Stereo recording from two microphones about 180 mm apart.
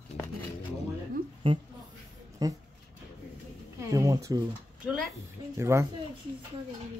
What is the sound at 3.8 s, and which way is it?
Speech, 20° right (ahead or behind).